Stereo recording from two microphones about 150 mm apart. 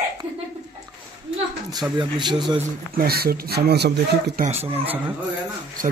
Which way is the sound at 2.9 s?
90° right.